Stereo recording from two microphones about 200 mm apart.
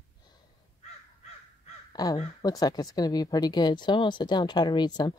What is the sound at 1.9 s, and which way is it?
Crow, 20° left (ahead or behind).